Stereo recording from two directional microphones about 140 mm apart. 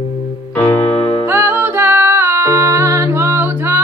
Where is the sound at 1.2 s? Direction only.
15° right (ahead or behind).